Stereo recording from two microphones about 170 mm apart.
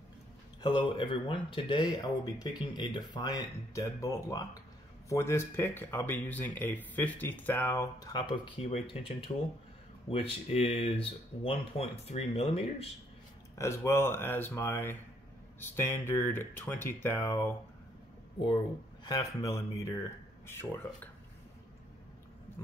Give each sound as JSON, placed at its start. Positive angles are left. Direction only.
{"t": 0.6, "sound": "speech", "side_deg": 25}
{"t": 10.1, "sound": "speech", "side_deg": 35}
{"t": 13.6, "sound": "speech", "side_deg": 15}
{"t": 19.0, "sound": "speech", "side_deg": 20}